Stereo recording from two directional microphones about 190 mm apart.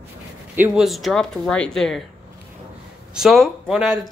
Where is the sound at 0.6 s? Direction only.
Centre (ahead or behind).